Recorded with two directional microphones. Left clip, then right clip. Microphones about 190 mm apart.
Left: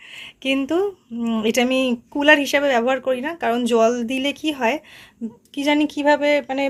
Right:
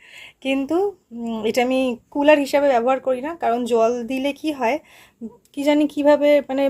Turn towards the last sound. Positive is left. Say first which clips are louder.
# right 2 dB
turn(degrees=-15)  # may be behind; listen again after turning